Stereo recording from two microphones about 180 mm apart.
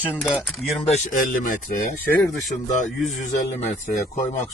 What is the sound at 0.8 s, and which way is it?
Speech, 40° left (ahead or behind).